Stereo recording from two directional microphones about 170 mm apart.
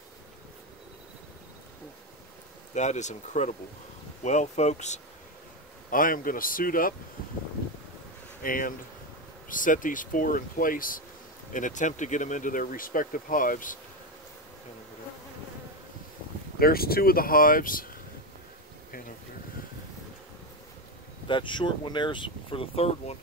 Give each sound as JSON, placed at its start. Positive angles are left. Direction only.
{"t": 2.7, "sound": "speech", "side_deg": 45}
{"t": 5.9, "sound": "speech", "side_deg": 55}
{"t": 8.4, "sound": "speech", "side_deg": 55}
{"t": 16.5, "sound": "speech", "side_deg": 65}
{"t": 21.3, "sound": "speech", "side_deg": 30}